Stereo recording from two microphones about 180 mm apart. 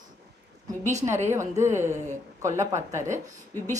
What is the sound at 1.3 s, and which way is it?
A woman's voice, 15° right (ahead or behind).